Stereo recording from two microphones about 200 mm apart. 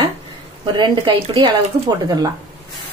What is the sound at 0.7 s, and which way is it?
A woman's voice, 20° right (ahead or behind).